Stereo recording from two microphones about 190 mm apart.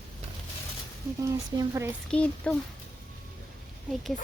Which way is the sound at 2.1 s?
5° left (ahead or behind).